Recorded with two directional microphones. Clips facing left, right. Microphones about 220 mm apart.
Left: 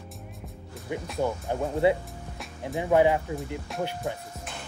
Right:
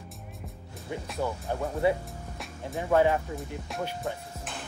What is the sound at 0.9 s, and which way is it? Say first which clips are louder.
Speech: left 3 dB; 15° left (ahead or behind).